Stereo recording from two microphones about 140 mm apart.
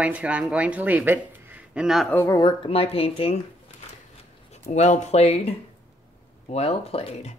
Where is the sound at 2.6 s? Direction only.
45° left (ahead or behind).